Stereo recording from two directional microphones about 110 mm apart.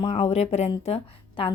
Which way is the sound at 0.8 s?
70° left (ahead or behind).